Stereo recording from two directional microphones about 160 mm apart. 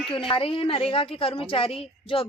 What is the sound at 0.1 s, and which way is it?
Speech, 35° left (ahead or behind).